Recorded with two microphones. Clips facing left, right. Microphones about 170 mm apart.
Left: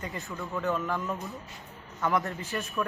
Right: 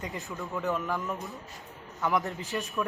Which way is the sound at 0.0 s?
20° right (ahead or behind).